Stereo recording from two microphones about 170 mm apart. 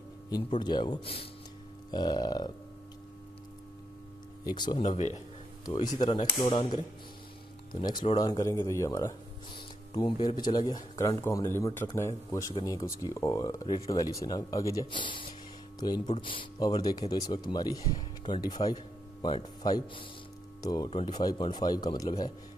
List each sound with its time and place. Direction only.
0.6 s speech: 25° left (ahead or behind)
4.5 s speech: 25° left (ahead or behind)
4.9 s speech: 45° left (ahead or behind)
5.7 s speech: 25° left (ahead or behind)
20.9 s speech: 35° left (ahead or behind)
21.2 s speech: 25° left (ahead or behind)